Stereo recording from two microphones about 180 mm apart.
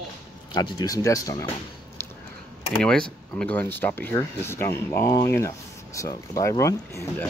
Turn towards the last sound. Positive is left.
turn(degrees=15)  # may be behind; listen again after turning